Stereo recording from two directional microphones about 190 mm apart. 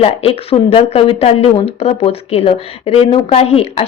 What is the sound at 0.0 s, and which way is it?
A woman's voice, 30° left (ahead or behind).